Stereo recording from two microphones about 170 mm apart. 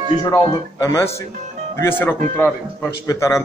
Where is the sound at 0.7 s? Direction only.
20° left (ahead or behind).